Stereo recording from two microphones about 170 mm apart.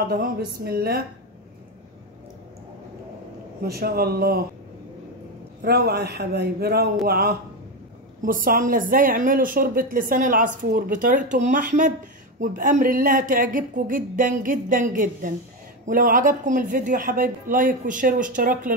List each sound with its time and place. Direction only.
0.1 s a woman's voice: 60° right (ahead or behind)
3.6 s a woman's voice: 65° right (ahead or behind)
5.6 s a man's voice: 65° right (ahead or behind)
8.2 s speech: 55° right (ahead or behind)